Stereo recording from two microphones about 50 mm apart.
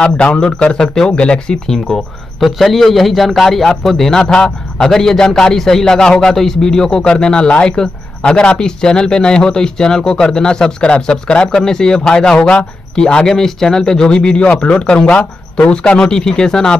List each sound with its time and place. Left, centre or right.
0.0 s speech: centre